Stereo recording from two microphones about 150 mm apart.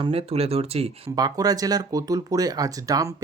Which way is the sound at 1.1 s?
25° right (ahead or behind).